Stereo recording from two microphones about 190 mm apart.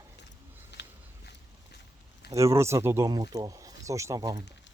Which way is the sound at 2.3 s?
15° right (ahead or behind).